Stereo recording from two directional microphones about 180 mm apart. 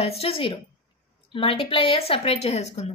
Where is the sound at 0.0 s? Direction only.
35° left (ahead or behind).